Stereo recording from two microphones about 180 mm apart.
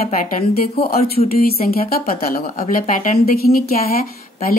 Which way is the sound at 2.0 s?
55° left (ahead or behind).